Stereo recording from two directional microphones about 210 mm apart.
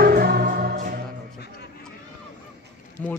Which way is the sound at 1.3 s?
50° left (ahead or behind).